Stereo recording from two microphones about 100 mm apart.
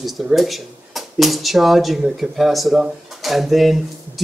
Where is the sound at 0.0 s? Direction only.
Centre (ahead or behind).